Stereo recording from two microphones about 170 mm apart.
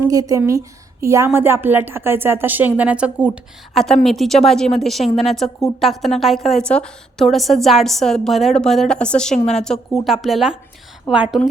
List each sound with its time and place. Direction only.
0.0 s a woman's voice: 20° right (ahead or behind)